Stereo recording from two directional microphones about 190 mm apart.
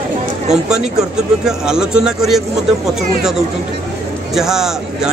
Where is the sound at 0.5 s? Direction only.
5° right (ahead or behind).